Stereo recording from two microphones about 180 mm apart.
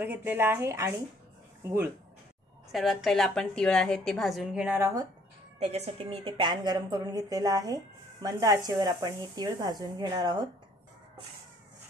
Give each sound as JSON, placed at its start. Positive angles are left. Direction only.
{"t": 0.0, "sound": "speech", "side_deg": -10}
{"t": 2.7, "sound": "a woman's voice", "side_deg": 0}
{"t": 5.6, "sound": "a woman's voice", "side_deg": -35}